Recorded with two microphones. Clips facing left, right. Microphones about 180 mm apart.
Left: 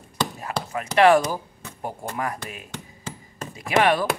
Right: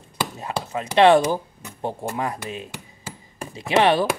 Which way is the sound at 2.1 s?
25° right (ahead or behind).